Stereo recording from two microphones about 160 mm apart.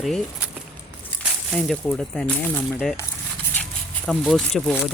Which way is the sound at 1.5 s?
5° left (ahead or behind).